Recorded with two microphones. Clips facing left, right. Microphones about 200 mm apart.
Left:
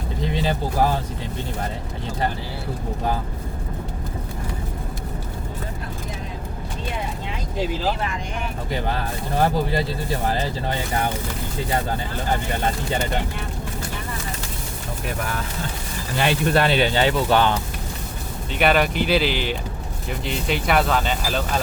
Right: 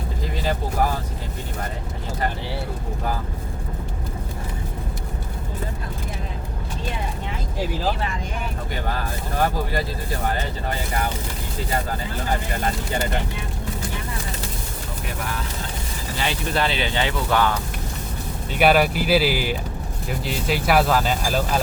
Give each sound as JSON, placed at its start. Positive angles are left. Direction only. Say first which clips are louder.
{"t": 0.4, "sound": "speech", "louder": "left 1 dB", "side_deg": 25}
{"t": 16.1, "sound": "speech", "louder": "left 5 dB", "side_deg": 55}
{"t": 17.2, "sound": "speech", "louder": "right 1 dB", "side_deg": 30}
{"t": 18.6, "sound": "speech", "louder": "right 1 dB", "side_deg": -5}